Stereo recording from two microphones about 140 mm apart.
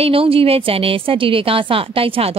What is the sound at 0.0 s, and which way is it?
A woman's voice, 40° right (ahead or behind).